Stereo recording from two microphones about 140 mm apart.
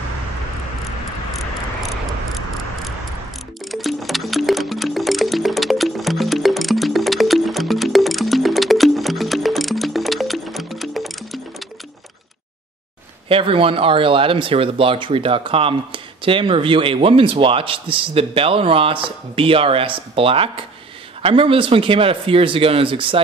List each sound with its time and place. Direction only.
3.7 s music: centre (ahead or behind)
13.3 s speech: 40° right (ahead or behind)